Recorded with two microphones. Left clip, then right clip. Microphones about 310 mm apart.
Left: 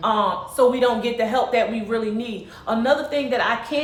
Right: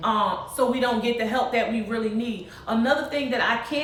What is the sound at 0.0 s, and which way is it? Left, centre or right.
A woman's voice, centre.